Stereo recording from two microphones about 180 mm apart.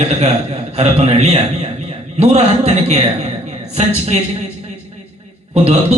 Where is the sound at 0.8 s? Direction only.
35° right (ahead or behind).